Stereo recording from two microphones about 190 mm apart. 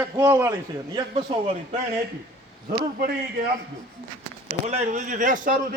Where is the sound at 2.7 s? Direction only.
50° right (ahead or behind).